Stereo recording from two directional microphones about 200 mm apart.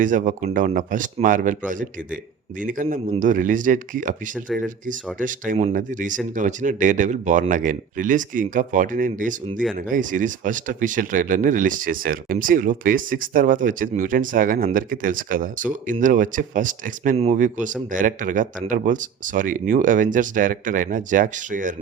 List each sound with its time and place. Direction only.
0.0 s speech: 40° right (ahead or behind)
5.2 s speech: 40° right (ahead or behind)